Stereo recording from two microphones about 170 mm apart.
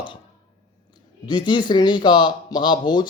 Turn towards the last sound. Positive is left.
turn(degrees=25)  # may be behind; listen again after turning